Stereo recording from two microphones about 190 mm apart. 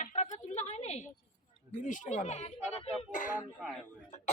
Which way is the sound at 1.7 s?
40° left (ahead or behind).